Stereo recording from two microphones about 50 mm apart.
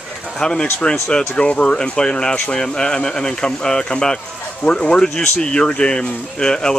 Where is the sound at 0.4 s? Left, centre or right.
Centre.